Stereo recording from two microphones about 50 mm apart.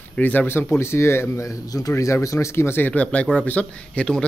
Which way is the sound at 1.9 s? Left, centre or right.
Left.